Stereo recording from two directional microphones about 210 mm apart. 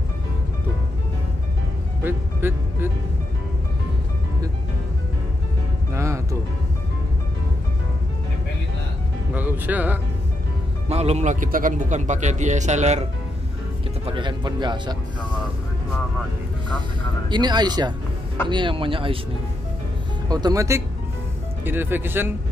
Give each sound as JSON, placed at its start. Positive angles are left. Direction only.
{"t": 2.0, "sound": "music", "side_deg": -10}
{"t": 5.9, "sound": "music", "side_deg": -15}
{"t": 9.3, "sound": "music", "side_deg": -10}
{"t": 10.9, "sound": "speech", "side_deg": -30}
{"t": 17.3, "sound": "speech", "side_deg": -20}
{"t": 20.2, "sound": "speech", "side_deg": -20}